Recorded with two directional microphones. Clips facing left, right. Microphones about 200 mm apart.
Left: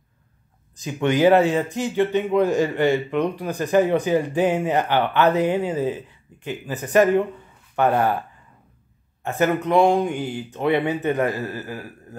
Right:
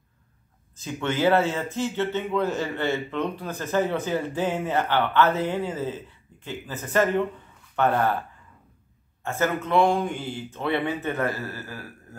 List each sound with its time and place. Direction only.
1.0 s speech: 15° left (ahead or behind)
9.2 s speech: 15° left (ahead or behind)